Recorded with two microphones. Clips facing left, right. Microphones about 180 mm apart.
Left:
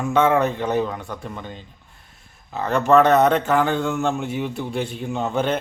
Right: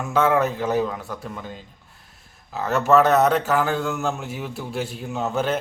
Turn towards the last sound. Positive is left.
turn(degrees=0)  # may be behind; listen again after turning